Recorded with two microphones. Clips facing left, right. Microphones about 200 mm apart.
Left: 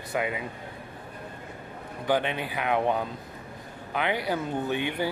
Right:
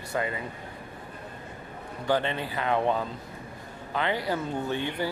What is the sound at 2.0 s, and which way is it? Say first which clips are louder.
Speech: even; 10° left (ahead or behind).